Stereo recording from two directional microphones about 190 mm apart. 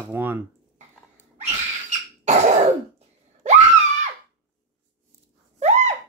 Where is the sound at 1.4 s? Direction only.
35° right (ahead or behind).